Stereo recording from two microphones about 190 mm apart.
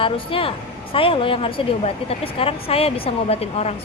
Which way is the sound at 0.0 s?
30° left (ahead or behind).